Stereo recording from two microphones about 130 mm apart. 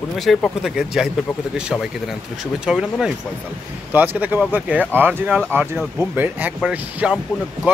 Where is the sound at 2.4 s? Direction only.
5° right (ahead or behind).